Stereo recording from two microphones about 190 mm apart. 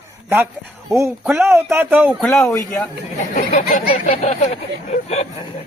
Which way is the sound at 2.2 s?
10° left (ahead or behind).